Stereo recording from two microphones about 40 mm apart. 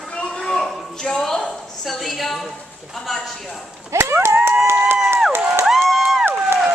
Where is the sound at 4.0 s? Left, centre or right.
Right.